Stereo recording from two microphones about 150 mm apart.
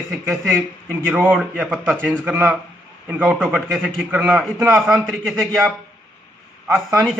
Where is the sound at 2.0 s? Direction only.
5° left (ahead or behind).